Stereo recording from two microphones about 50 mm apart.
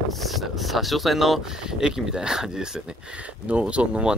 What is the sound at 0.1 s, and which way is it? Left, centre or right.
Speech, centre.